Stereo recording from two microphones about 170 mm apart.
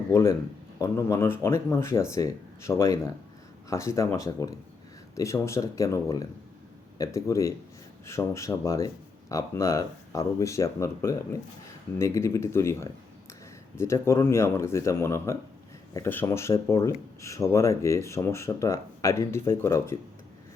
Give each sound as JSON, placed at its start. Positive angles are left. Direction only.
{"t": 0.1, "sound": "speech", "side_deg": 15}